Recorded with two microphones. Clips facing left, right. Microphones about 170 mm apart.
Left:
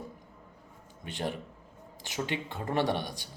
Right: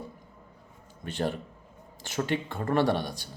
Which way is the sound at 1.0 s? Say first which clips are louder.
Right 4 dB; 15° left (ahead or behind).